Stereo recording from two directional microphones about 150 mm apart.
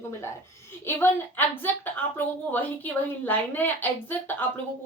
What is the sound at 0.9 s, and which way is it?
A woman's voice, 10° left (ahead or behind).